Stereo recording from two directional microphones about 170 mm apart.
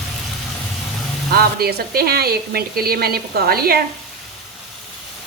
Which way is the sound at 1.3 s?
65° right (ahead or behind).